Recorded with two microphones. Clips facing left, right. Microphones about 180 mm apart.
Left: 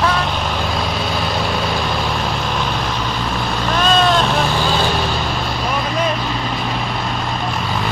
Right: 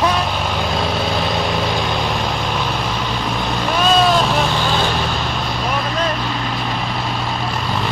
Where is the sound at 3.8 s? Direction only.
5° right (ahead or behind).